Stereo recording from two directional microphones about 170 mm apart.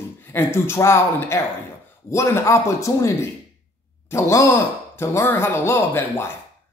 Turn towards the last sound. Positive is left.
turn(degrees=15)  # may be behind; listen again after turning